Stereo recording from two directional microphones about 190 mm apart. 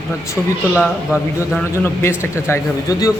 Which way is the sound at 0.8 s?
Centre (ahead or behind).